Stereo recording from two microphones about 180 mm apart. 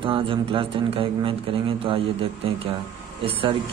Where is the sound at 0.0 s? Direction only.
30° right (ahead or behind).